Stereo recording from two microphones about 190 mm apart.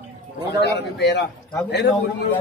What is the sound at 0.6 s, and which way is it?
Speech, 60° left (ahead or behind).